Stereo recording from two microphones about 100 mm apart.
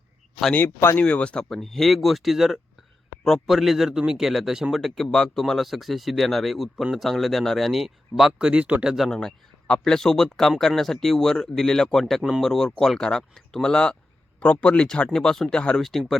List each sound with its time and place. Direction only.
0.5 s speech: 25° left (ahead or behind)
1.0 s speech: 10° left (ahead or behind); by 9.0 s 5° right (ahead or behind)
9.0 s speech: 5° left (ahead or behind)